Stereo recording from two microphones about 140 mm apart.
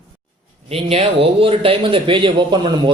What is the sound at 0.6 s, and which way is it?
A man's voice, 45° right (ahead or behind).